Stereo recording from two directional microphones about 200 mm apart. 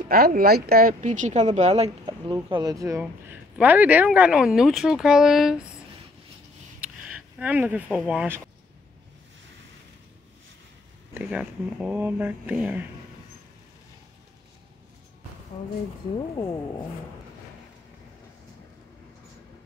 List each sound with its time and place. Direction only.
0.1 s speech: 50° right (ahead or behind); by 2.3 s 30° right (ahead or behind)
2.5 s speech: 20° right (ahead or behind); by 5.7 s centre (ahead or behind)
6.8 s speech: 5° right (ahead or behind)
11.1 s speech: 5° right (ahead or behind)